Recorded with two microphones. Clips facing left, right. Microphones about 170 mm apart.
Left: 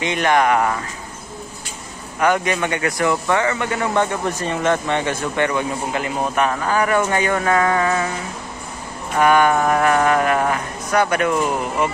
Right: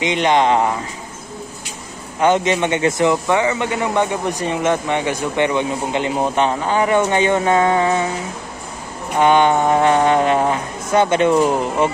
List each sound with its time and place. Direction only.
0.0 s speech: 20° right (ahead or behind)
2.1 s speech: 25° right (ahead or behind)
9.1 s speech: 25° right (ahead or behind)